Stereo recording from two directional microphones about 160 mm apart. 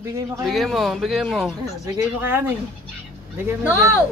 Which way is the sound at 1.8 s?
15° right (ahead or behind).